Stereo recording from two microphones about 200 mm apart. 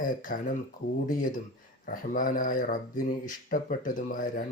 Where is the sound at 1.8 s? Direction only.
40° left (ahead or behind).